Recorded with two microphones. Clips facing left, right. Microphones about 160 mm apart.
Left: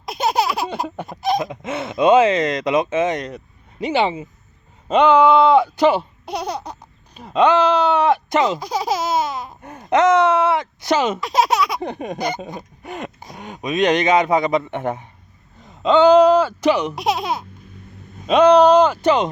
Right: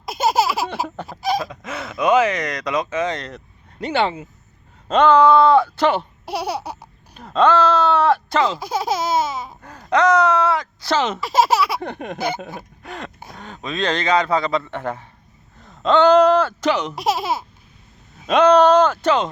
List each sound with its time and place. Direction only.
0.0 s baby laughter: centre (ahead or behind)
1.4 s speech: 25° left (ahead or behind)
6.2 s laughter: 10° right (ahead or behind)
7.2 s speech: 10° left (ahead or behind)
8.5 s laughter: centre (ahead or behind)
9.6 s speech: 20° left (ahead or behind)
11.2 s laughter: centre (ahead or behind)
12.8 s a sound: 15° left (ahead or behind)
13.3 s speech: 15° left (ahead or behind)
15.6 s speech: 10° left (ahead or behind)
16.9 s laughter: centre (ahead or behind)
18.2 s speech: centre (ahead or behind)